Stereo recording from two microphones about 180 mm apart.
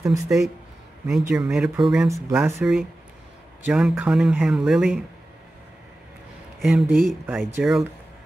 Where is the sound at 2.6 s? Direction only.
Centre (ahead or behind).